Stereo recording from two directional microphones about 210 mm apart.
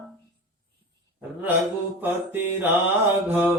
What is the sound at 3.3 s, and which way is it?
Speech, 10° right (ahead or behind).